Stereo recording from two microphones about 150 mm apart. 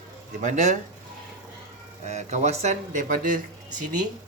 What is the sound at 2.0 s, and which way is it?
Speech, 50° right (ahead or behind).